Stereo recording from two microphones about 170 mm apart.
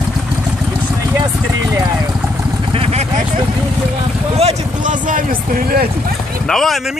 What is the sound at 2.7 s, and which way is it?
Vehicle, 35° right (ahead or behind).